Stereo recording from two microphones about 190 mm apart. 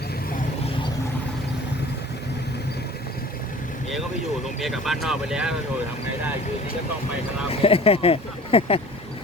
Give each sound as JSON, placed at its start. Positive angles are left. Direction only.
{"t": 4.6, "sound": "speech", "side_deg": 0}
{"t": 7.6, "sound": "speech", "side_deg": 30}